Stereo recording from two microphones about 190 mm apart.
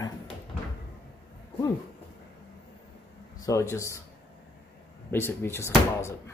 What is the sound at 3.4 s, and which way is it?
Speech, 15° left (ahead or behind).